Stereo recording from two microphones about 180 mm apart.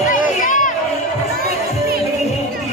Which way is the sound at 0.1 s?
45° left (ahead or behind).